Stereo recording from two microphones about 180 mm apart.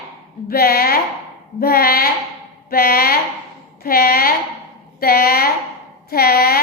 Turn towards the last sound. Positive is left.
turn(degrees=55)  # may be behind; listen again after turning